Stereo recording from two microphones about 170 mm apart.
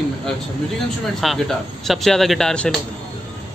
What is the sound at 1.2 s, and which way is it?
A man's voice, centre (ahead or behind).